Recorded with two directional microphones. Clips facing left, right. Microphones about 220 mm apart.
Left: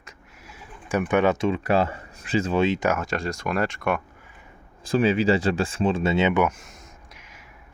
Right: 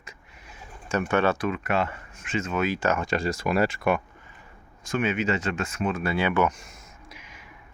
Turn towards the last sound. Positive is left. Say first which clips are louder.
# right 2 dB
turn(degrees=0)  # may be behind; listen again after turning